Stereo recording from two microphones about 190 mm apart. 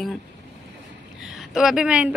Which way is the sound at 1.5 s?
5° right (ahead or behind).